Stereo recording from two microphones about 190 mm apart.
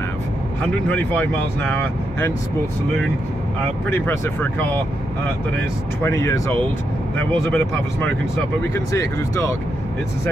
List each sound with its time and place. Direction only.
3.9 s speech: 10° left (ahead or behind)
6.0 s speech: 15° left (ahead or behind)